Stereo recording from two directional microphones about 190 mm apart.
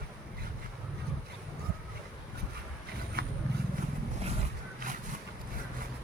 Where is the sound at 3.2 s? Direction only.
55° right (ahead or behind).